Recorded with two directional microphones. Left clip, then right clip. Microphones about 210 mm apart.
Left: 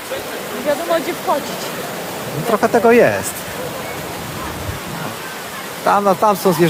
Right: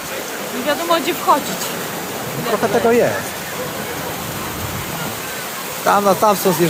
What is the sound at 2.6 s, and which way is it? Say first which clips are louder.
Speech: left 3 dB; 20° left (ahead or behind).